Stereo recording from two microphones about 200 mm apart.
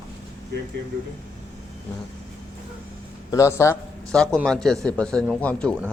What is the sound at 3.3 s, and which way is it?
A man's voice, 15° left (ahead or behind).